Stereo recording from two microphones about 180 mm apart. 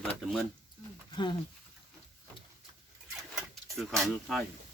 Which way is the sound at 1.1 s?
25° left (ahead or behind).